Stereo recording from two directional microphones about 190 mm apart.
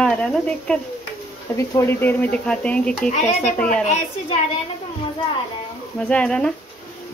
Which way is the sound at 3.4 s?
5° left (ahead or behind).